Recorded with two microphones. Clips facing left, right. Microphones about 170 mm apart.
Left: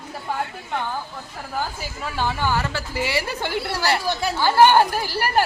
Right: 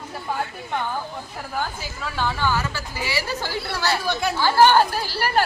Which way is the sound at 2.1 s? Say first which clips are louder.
Even; 15° left (ahead or behind).